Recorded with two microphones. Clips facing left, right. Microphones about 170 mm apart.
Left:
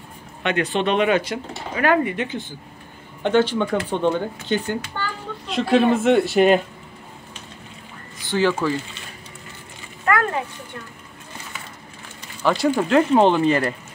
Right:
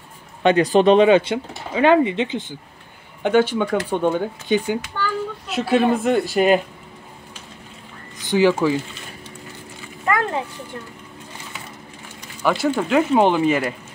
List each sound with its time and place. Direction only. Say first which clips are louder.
0.4 s speech: right 7 dB; 35° right (ahead or behind)
3.2 s speech: right 1 dB; 10° right (ahead or behind)
8.2 s speech: right 4 dB; 15° right (ahead or behind)
10.0 s a sound: even; 20° right (ahead or behind)
12.4 s speech: left 1 dB; centre (ahead or behind)